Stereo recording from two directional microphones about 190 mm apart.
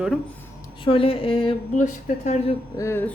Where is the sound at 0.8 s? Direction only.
30° left (ahead or behind).